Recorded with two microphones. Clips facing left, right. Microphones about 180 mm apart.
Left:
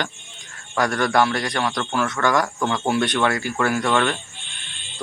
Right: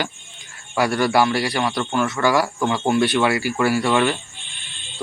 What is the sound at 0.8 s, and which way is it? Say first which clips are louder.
Speech: right 1 dB; 5° right (ahead or behind).